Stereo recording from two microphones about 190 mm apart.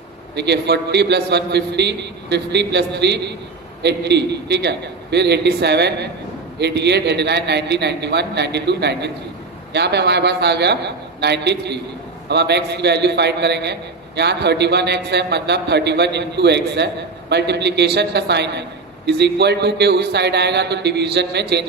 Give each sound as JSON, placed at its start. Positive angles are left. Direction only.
{"t": 0.4, "sound": "a man's voice", "side_deg": -60}